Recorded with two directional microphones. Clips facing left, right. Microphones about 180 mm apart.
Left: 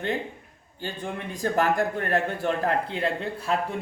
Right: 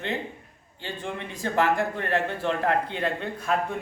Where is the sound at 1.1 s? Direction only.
40° left (ahead or behind).